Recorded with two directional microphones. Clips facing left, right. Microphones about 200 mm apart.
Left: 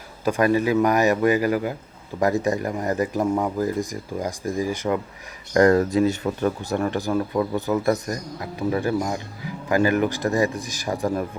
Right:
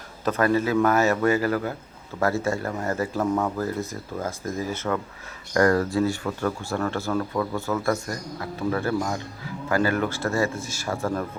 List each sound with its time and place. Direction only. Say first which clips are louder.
0.3 s speech: left 2 dB; 15° left (ahead or behind)